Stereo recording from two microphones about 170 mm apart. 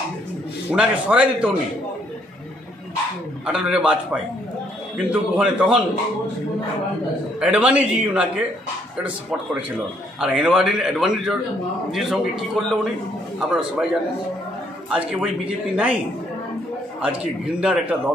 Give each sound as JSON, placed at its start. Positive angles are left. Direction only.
{"t": 0.7, "sound": "a man's voice", "side_deg": -10}
{"t": 3.4, "sound": "a man's voice", "side_deg": -5}
{"t": 7.3, "sound": "a man's voice", "side_deg": -5}
{"t": 14.9, "sound": "a man's voice", "side_deg": -5}
{"t": 17.0, "sound": "a man's voice", "side_deg": -5}